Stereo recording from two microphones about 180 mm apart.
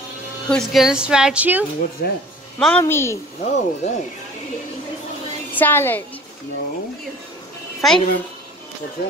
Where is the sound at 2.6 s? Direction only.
10° left (ahead or behind).